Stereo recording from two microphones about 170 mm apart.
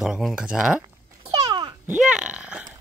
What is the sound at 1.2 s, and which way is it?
Babbling, 25° right (ahead or behind).